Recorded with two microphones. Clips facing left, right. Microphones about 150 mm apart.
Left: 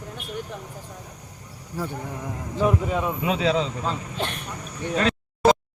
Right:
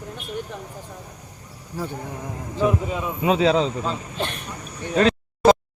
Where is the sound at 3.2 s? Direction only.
30° right (ahead or behind).